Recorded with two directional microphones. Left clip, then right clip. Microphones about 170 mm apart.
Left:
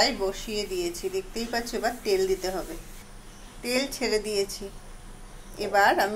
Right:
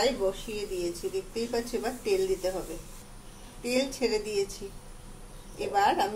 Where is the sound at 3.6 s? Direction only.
15° left (ahead or behind).